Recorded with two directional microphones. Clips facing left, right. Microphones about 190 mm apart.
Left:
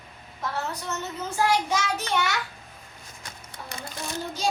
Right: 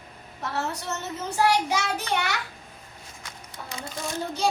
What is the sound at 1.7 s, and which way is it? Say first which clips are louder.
Child singing: even; 65° right (ahead or behind).